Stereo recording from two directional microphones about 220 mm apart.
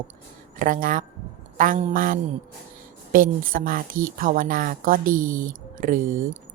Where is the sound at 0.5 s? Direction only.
35° right (ahead or behind).